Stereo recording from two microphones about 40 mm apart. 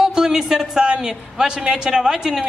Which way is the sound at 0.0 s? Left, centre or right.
Centre.